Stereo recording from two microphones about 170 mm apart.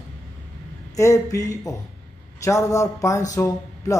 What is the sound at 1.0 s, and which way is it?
A man's voice, 20° left (ahead or behind).